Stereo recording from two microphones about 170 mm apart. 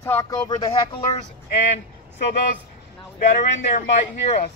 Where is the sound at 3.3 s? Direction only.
45° left (ahead or behind).